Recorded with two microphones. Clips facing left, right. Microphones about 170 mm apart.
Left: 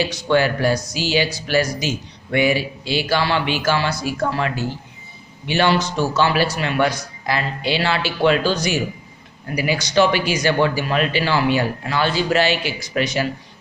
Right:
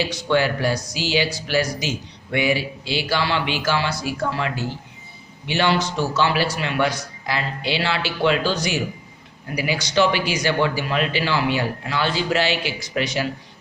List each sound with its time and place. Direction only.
0.3 s speech: 45° left (ahead or behind)